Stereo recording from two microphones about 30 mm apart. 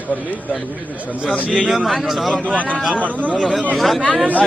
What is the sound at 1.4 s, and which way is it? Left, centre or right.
Speech, right.